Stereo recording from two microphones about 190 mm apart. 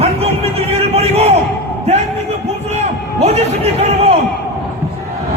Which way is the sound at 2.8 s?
35° right (ahead or behind).